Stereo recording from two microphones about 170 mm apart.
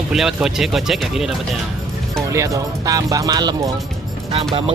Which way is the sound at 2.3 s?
20° right (ahead or behind).